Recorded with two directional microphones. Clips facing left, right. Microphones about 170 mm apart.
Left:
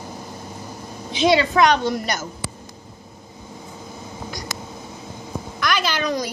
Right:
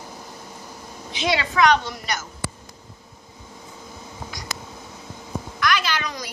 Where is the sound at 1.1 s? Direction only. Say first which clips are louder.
Left 6 dB; 30° left (ahead or behind).